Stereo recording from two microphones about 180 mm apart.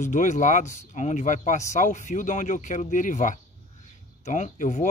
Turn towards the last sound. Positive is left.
turn(degrees=45)  # may be behind; listen again after turning